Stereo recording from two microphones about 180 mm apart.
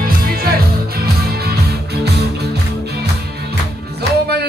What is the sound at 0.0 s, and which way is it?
Music, 55° right (ahead or behind).